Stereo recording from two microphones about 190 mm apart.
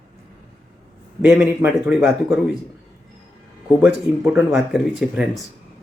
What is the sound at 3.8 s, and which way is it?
Speech, 5° right (ahead or behind).